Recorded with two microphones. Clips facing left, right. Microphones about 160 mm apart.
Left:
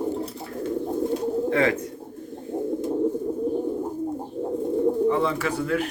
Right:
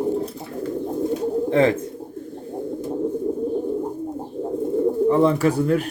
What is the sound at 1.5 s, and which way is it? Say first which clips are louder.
Speech: right 5 dB; 30° right (ahead or behind).